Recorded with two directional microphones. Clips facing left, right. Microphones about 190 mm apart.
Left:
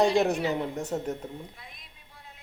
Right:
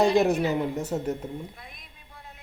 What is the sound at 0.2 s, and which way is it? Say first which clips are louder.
Speech: right 3 dB; centre (ahead or behind).